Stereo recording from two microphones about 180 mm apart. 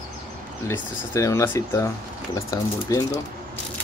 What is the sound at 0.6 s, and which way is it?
Speech, 15° left (ahead or behind).